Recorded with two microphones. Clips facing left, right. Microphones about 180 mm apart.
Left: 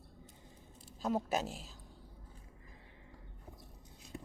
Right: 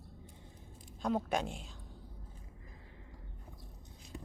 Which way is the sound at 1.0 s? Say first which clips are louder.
Right 1 dB; 5° left (ahead or behind).